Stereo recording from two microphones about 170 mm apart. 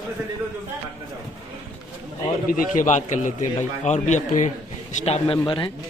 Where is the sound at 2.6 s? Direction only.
50° left (ahead or behind).